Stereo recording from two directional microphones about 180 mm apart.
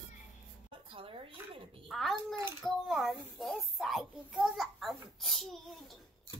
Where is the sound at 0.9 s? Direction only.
30° right (ahead or behind).